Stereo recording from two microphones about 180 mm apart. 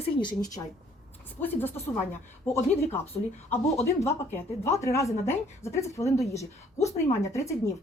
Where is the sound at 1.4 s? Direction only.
10° left (ahead or behind).